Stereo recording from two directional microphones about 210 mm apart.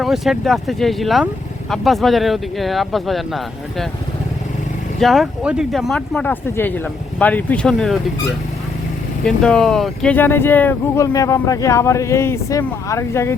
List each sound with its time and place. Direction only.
0.0 s speech: centre (ahead or behind)
4.9 s speech: centre (ahead or behind)
9.2 s speech: 5° left (ahead or behind)